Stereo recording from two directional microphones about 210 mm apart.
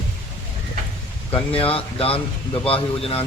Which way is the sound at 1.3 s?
25° left (ahead or behind).